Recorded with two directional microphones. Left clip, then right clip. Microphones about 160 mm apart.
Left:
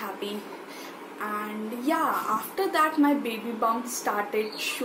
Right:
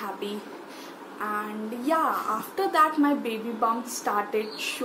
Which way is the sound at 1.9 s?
5° right (ahead or behind).